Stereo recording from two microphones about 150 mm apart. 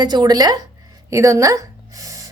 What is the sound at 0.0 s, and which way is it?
A woman's voice, 30° right (ahead or behind).